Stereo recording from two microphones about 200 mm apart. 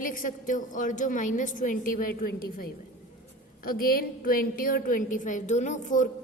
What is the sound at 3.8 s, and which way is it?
A woman's voice, 45° left (ahead or behind).